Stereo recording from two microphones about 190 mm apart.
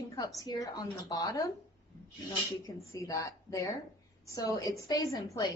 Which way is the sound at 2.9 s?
15° left (ahead or behind).